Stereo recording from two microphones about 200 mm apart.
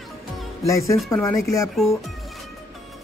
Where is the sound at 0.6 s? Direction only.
15° left (ahead or behind).